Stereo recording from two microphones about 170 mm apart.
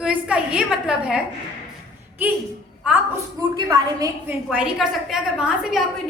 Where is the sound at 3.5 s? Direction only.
25° right (ahead or behind).